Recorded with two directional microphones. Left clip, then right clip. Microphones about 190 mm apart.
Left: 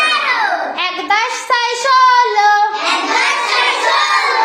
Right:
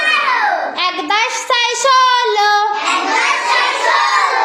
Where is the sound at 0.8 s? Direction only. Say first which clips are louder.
Even; 25° right (ahead or behind).